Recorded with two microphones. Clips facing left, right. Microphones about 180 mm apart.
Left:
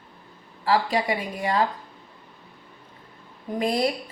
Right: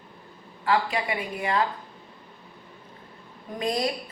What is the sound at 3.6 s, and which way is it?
Speech, 30° left (ahead or behind).